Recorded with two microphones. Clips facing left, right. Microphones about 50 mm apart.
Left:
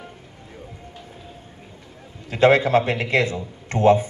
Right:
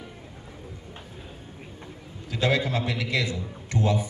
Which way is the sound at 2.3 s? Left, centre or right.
Left.